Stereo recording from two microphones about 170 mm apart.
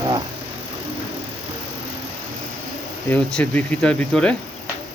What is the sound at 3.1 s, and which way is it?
Speech, 5° left (ahead or behind).